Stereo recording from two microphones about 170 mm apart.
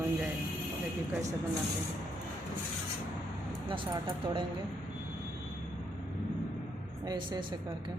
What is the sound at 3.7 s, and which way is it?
Speech, 30° right (ahead or behind).